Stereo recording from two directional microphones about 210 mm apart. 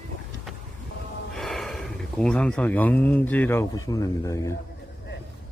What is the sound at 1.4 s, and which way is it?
Speech, centre (ahead or behind).